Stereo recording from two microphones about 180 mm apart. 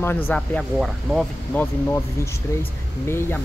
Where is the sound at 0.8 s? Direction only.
Centre (ahead or behind).